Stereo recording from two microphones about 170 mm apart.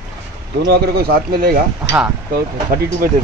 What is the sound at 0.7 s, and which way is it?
Speech, 65° right (ahead or behind).